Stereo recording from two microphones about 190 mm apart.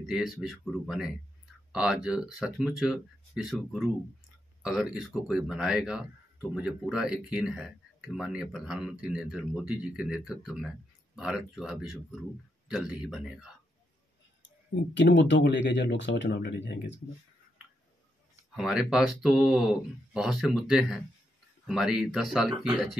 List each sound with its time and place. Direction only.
0.0 s speech: centre (ahead or behind)
15.0 s speech: 70° left (ahead or behind)
18.3 s speech: 5° right (ahead or behind)